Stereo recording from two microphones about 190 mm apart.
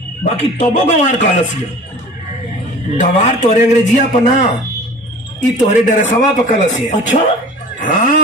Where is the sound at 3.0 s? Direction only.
40° left (ahead or behind).